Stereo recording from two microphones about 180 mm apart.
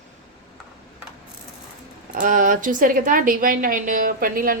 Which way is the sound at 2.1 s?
50° right (ahead or behind).